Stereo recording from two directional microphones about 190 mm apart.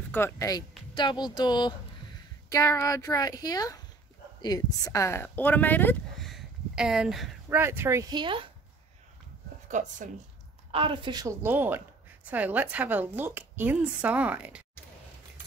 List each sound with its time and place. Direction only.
0.1 s a woman's voice: 10° left (ahead or behind); by 8.5 s 25° right (ahead or behind)
9.7 s speech: 40° right (ahead or behind)
10.7 s a woman's voice: 25° right (ahead or behind)
11.4 s a woman's voice: 10° right (ahead or behind)